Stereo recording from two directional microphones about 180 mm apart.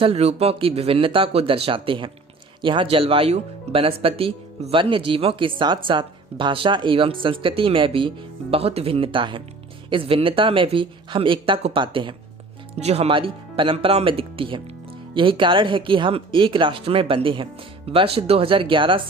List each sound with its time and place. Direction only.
0.0 s speech: 35° right (ahead or behind)